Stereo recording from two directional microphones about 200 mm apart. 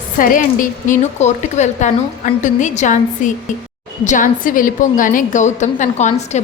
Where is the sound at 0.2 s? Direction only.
45° left (ahead or behind).